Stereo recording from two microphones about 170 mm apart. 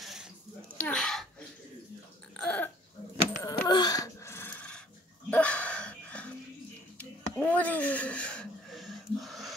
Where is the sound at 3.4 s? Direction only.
25° left (ahead or behind).